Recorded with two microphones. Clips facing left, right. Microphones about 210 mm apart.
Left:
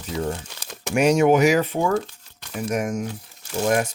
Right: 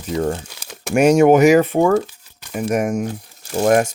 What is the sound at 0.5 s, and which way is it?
Crumpling, 10° right (ahead or behind).